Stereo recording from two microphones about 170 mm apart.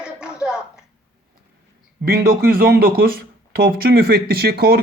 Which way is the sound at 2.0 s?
65° right (ahead or behind).